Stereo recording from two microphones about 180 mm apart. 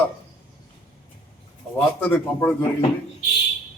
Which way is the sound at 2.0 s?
10° left (ahead or behind).